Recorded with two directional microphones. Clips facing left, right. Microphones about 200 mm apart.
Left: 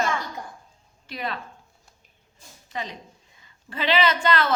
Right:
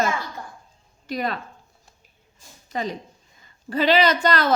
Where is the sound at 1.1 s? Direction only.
40° right (ahead or behind).